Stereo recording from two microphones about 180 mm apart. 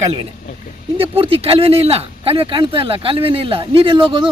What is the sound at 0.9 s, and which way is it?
Speech, 30° right (ahead or behind).